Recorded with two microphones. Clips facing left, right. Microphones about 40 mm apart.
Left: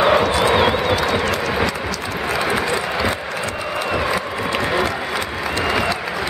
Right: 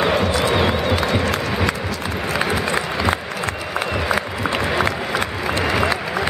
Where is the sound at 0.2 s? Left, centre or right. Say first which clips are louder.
Left 3 dB; left.